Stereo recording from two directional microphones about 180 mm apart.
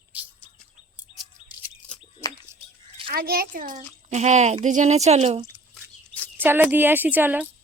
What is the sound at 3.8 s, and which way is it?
Speech, 40° right (ahead or behind).